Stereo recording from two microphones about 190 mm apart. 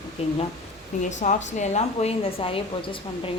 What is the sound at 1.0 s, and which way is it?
A woman's voice, 40° left (ahead or behind).